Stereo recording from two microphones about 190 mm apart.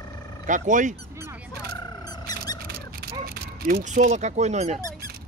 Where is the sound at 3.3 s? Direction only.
50° right (ahead or behind).